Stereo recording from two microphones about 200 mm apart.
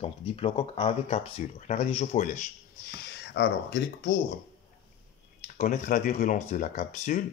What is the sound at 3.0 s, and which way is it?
Speech, 55° left (ahead or behind).